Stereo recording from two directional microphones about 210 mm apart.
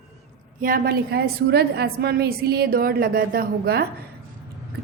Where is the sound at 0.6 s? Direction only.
45° right (ahead or behind).